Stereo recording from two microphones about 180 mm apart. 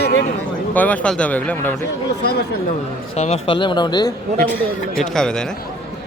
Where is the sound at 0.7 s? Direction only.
10° left (ahead or behind).